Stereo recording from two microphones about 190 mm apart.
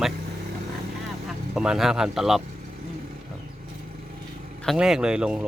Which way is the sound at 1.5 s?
5° right (ahead or behind).